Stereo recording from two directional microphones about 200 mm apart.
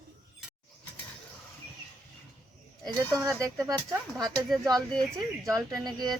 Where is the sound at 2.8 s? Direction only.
15° right (ahead or behind).